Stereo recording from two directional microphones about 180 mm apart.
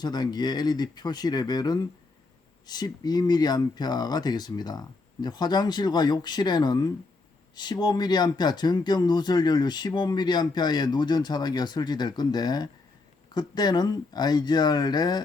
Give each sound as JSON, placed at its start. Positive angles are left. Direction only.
{"t": 0.0, "sound": "speech", "side_deg": 25}